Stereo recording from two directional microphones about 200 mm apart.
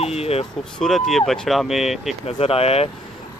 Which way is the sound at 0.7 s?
Centre (ahead or behind).